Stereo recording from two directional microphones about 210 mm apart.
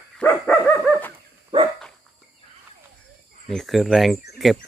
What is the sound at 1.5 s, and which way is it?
Dog, 25° right (ahead or behind).